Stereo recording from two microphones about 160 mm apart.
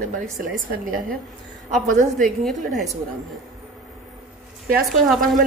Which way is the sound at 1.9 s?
60° right (ahead or behind).